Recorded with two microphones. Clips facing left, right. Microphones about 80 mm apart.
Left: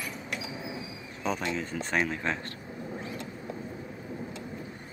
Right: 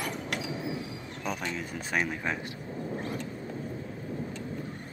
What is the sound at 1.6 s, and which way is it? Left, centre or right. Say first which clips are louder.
Speech: left 2 dB; centre.